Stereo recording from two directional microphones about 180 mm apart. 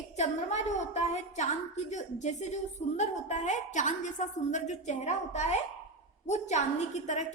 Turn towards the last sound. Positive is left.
turn(degrees=40)  # may be behind; listen again after turning